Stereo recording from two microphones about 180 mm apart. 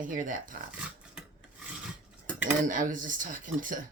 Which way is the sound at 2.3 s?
10° right (ahead or behind).